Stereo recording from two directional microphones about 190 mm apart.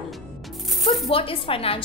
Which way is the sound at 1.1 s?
30° left (ahead or behind).